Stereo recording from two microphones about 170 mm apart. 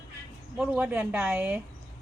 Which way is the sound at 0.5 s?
5° right (ahead or behind).